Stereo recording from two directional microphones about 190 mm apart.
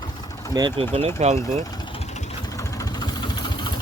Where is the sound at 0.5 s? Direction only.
25° right (ahead or behind).